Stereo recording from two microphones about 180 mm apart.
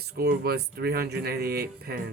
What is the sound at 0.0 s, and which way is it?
Speech, 65° right (ahead or behind).